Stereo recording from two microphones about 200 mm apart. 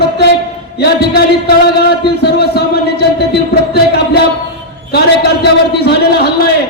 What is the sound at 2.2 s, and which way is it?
Speech, 55° left (ahead or behind).